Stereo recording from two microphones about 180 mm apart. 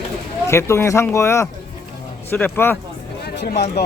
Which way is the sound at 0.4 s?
15° left (ahead or behind).